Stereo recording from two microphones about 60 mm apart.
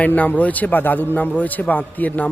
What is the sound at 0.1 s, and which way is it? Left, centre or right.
Speech, left.